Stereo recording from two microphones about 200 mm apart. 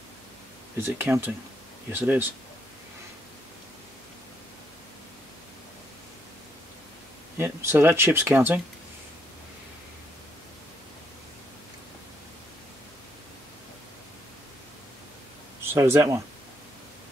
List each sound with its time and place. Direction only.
0.7 s speech: 10° right (ahead or behind)
7.3 s speech: 10° right (ahead or behind)
15.6 s speech: 10° right (ahead or behind)